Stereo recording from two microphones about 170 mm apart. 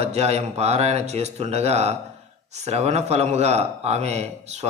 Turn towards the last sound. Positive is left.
turn(degrees=-40)  # may be behind; listen again after turning